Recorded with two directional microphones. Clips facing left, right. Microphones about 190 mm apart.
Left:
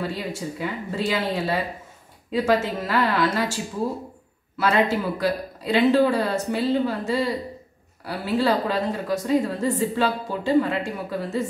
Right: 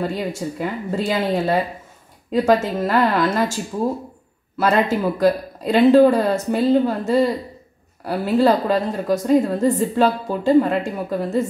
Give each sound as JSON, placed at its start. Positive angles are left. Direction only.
{"t": 0.0, "sound": "a woman's voice", "side_deg": -45}
{"t": 4.6, "sound": "a woman's voice", "side_deg": -45}